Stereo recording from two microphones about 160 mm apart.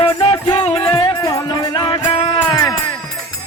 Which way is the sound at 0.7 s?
10° left (ahead or behind).